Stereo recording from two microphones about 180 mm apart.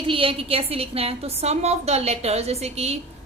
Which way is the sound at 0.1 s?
30° right (ahead or behind).